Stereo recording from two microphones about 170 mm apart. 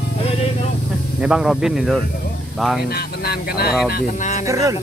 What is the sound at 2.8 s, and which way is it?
Speech, 65° left (ahead or behind).